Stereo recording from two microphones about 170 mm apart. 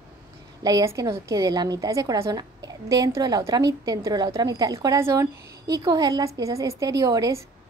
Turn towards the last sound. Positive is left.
turn(degrees=-20)  # may be behind; listen again after turning